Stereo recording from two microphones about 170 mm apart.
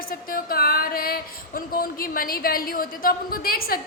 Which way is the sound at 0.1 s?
55° left (ahead or behind).